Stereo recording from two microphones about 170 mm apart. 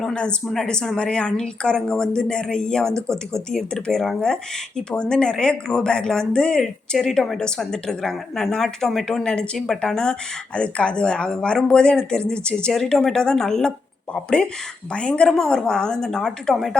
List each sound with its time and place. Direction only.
0.0 s speech: 5° left (ahead or behind)